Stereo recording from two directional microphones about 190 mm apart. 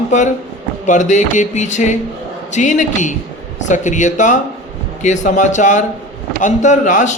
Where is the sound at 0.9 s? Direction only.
40° left (ahead or behind).